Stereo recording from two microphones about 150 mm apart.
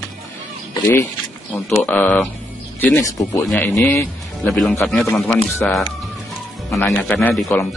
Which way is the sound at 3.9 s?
10° left (ahead or behind).